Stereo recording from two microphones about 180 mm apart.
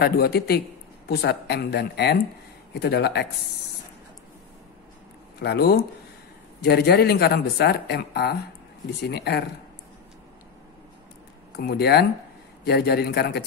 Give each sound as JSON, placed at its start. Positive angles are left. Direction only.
{"t": 0.0, "sound": "speech", "side_deg": 60}
{"t": 5.4, "sound": "speech", "side_deg": 60}
{"t": 11.5, "sound": "speech", "side_deg": 65}